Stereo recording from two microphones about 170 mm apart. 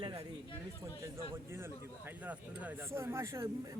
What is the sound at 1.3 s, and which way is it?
Speech, 15° right (ahead or behind).